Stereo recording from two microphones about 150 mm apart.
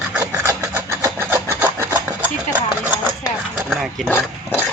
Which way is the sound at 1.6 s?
15° right (ahead or behind).